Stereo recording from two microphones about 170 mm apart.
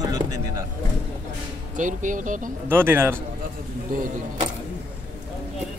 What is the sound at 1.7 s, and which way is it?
Speech, 50° right (ahead or behind).